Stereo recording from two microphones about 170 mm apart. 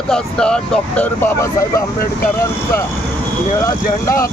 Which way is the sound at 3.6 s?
20° left (ahead or behind).